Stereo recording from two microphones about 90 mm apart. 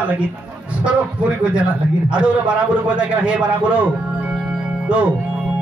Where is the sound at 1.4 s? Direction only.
10° right (ahead or behind).